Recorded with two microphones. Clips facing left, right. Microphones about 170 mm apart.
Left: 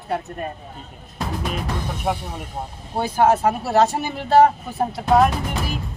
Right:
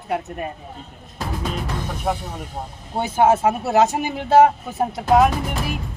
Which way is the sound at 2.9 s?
20° right (ahead or behind).